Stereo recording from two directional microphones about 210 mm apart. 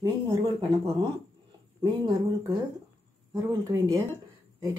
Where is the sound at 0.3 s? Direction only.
20° right (ahead or behind).